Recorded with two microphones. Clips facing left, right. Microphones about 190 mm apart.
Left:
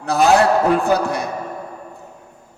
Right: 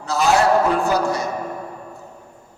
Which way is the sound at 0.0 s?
60° left (ahead or behind).